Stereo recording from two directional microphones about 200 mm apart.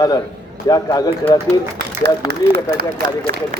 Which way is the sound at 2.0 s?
55° right (ahead or behind).